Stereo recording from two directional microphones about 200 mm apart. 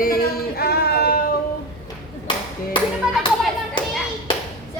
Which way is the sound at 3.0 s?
5° right (ahead or behind).